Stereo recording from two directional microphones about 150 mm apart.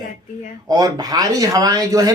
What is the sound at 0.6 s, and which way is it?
Speech, 25° right (ahead or behind).